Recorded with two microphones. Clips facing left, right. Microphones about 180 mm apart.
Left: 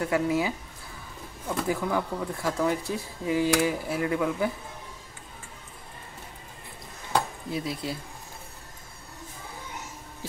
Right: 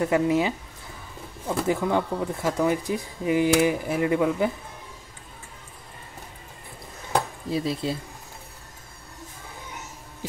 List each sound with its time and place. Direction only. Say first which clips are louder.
0.0 s speech: right 4 dB; 20° right (ahead or behind)
1.6 s speech: right 4 dB; 25° right (ahead or behind)
7.5 s speech: right 5 dB; 25° right (ahead or behind)